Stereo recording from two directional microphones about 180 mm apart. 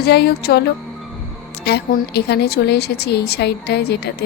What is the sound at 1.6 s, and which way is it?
A woman's voice, 65° left (ahead or behind).